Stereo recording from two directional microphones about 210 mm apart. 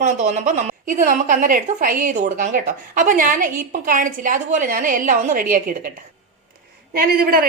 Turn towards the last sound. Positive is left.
turn(degrees=-45)  # may be behind; listen again after turning